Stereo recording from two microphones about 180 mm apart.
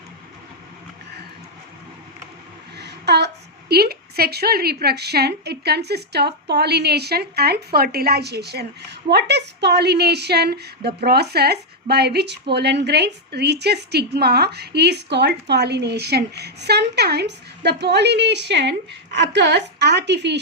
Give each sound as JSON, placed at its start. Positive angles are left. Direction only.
{"t": 2.7, "sound": "a woman's voice", "side_deg": -65}